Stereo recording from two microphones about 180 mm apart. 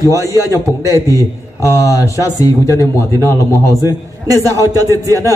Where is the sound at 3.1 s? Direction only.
15° right (ahead or behind).